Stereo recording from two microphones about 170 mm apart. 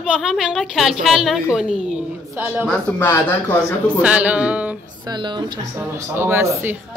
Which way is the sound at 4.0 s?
10° right (ahead or behind).